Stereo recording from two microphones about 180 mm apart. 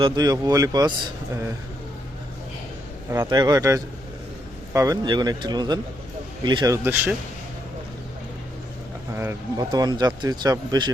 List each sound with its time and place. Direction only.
0.0 s speech: 20° right (ahead or behind)
3.1 s speech: 20° right (ahead or behind)
6.8 s a man's voice: 10° right (ahead or behind)
9.1 s speech: 15° right (ahead or behind)